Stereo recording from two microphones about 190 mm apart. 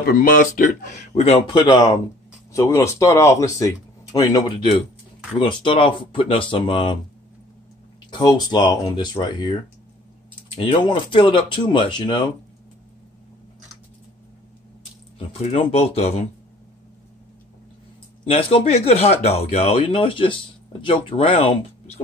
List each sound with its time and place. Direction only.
0.0 s speech: 50° left (ahead or behind); by 7.0 s 25° left (ahead or behind)
8.1 s speech: 20° left (ahead or behind)
15.1 s speech: 30° left (ahead or behind)
18.2 s speech: 30° left (ahead or behind)